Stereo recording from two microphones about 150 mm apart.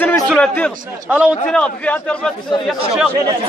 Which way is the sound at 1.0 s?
10° right (ahead or behind).